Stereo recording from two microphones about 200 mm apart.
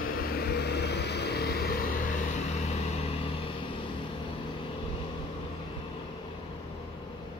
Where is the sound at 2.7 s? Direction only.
30° left (ahead or behind).